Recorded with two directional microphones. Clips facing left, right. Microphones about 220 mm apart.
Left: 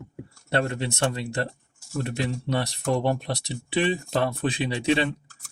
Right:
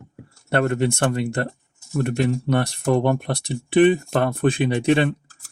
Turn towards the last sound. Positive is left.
turn(degrees=-55)  # may be behind; listen again after turning